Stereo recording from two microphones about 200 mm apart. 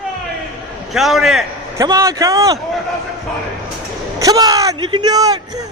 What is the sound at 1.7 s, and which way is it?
Speech, 15° right (ahead or behind).